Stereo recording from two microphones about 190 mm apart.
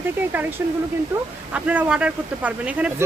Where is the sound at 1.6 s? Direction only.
5° right (ahead or behind).